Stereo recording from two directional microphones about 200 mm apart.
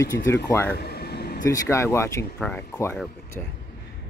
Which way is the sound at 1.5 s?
15° left (ahead or behind).